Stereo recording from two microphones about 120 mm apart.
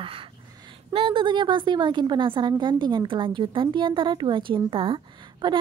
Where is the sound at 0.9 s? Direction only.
45° right (ahead or behind).